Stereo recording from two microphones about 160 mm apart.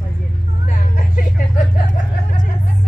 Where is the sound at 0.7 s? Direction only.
55° left (ahead or behind).